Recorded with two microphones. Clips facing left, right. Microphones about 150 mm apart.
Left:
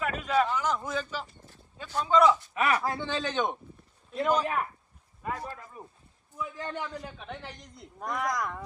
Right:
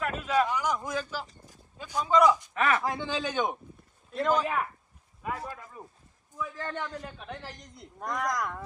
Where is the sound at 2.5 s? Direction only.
15° left (ahead or behind).